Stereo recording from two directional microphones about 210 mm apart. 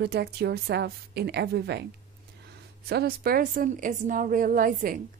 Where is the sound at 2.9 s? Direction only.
50° right (ahead or behind).